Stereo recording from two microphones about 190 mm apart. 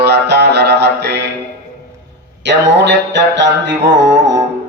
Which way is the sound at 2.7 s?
65° right (ahead or behind).